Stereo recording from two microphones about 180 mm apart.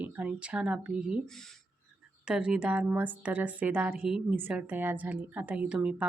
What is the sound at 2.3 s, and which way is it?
A woman's voice, 5° right (ahead or behind).